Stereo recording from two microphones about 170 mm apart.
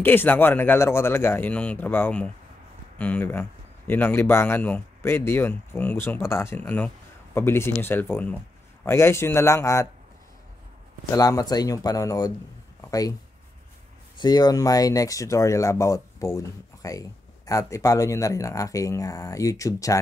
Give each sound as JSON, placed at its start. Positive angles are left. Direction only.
{"t": 0.0, "sound": "speech", "side_deg": 10}
{"t": 11.1, "sound": "speech", "side_deg": 20}
{"t": 12.8, "sound": "a sound", "side_deg": 20}
{"t": 14.2, "sound": "speech", "side_deg": 25}